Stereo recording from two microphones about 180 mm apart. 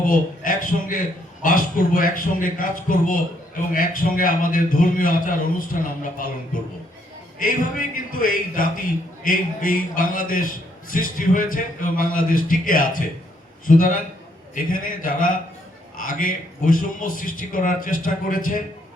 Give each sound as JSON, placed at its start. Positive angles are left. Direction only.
{"t": 0.0, "sound": "a man's voice", "side_deg": 50}
{"t": 7.3, "sound": "a man's voice", "side_deg": 50}